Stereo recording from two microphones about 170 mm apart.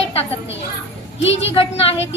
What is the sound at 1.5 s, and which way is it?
Speech, 35° left (ahead or behind).